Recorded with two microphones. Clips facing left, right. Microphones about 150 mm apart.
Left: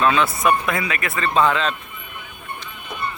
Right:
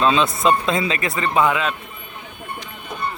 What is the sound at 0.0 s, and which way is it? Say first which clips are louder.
Speech: right 1 dB; 20° right (ahead or behind).